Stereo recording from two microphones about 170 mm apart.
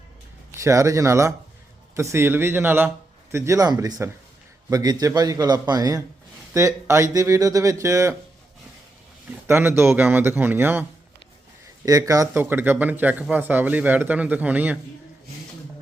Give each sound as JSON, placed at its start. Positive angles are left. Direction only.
{"t": 0.6, "sound": "speech", "side_deg": -20}
{"t": 9.5, "sound": "speech", "side_deg": -15}
{"t": 11.9, "sound": "speech", "side_deg": -20}